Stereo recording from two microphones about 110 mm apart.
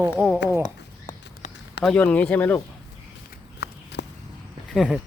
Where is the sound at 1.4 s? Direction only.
90° left.